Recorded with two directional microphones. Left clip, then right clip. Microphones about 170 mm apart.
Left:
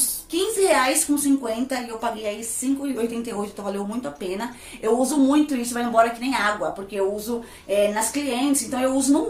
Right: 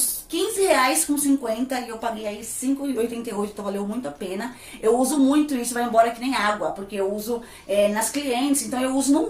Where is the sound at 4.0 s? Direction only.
10° left (ahead or behind).